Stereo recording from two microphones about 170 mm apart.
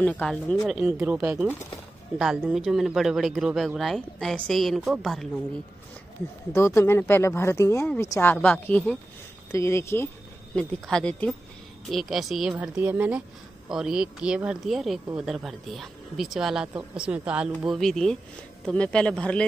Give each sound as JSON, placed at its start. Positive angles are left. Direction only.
{"t": 0.0, "sound": "speech", "side_deg": 10}
{"t": 0.7, "sound": "speech", "side_deg": -5}
{"t": 6.5, "sound": "speech", "side_deg": 15}
{"t": 10.5, "sound": "speech", "side_deg": 5}